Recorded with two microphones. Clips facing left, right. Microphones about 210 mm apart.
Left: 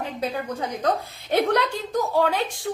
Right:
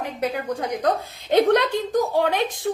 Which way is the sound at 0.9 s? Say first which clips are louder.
Right 1 dB; 15° right (ahead or behind).